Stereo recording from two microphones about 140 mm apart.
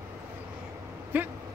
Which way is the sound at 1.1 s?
15° right (ahead or behind).